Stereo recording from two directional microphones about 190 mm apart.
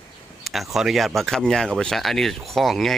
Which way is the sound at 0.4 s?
Centre (ahead or behind).